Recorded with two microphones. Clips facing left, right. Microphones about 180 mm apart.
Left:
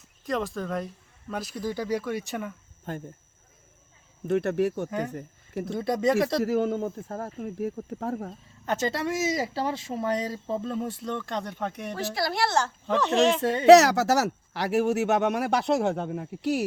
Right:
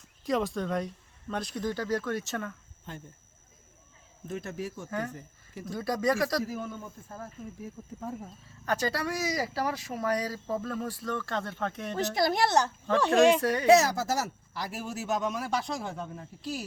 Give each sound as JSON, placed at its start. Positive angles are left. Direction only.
{"t": 0.3, "sound": "speech", "side_deg": 0}
{"t": 2.9, "sound": "speech", "side_deg": 45}
{"t": 4.3, "sound": "speech", "side_deg": 70}
{"t": 4.9, "sound": "speech", "side_deg": 20}
{"t": 5.1, "sound": "speech", "side_deg": 60}
{"t": 5.7, "sound": "speech", "side_deg": 20}
{"t": 6.4, "sound": "speech", "side_deg": 75}
{"t": 8.6, "sound": "speech", "side_deg": 20}
{"t": 11.9, "sound": "a woman's voice", "side_deg": -20}
{"t": 13.4, "sound": "speech", "side_deg": 25}
{"t": 13.7, "sound": "speech", "side_deg": 75}